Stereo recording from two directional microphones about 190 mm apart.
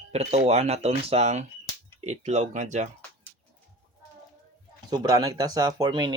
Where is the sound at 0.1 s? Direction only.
35° right (ahead or behind).